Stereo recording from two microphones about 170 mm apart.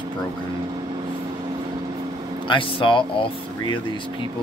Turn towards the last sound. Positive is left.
turn(degrees=30)  # may be behind; listen again after turning